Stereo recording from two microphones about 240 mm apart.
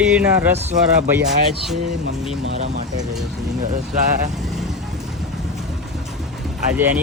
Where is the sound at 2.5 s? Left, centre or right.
Right.